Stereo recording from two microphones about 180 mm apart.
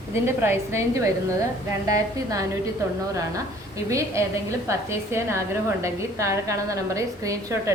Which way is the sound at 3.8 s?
15° right (ahead or behind).